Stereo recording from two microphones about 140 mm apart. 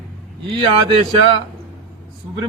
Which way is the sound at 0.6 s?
35° right (ahead or behind).